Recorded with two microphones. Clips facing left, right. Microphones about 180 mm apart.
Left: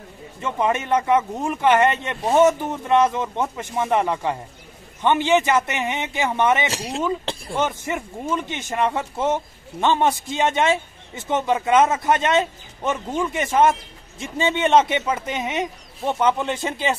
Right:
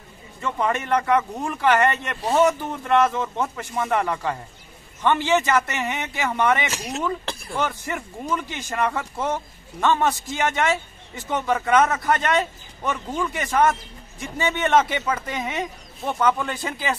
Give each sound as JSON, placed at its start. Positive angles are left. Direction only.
{"t": 0.4, "sound": "speech", "side_deg": 20}
{"t": 6.7, "sound": "speech", "side_deg": 35}